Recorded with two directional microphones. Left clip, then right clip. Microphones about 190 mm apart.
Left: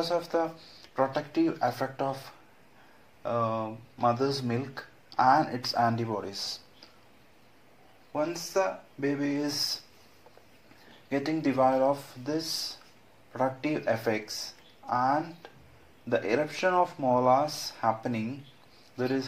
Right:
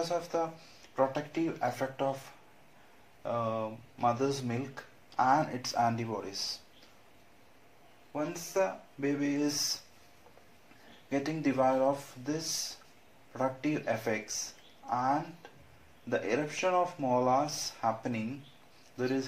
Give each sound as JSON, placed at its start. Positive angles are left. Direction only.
{"t": 0.0, "sound": "speech", "side_deg": 25}
{"t": 3.2, "sound": "speech", "side_deg": 20}
{"t": 8.1, "sound": "speech", "side_deg": 35}
{"t": 11.1, "sound": "speech", "side_deg": 25}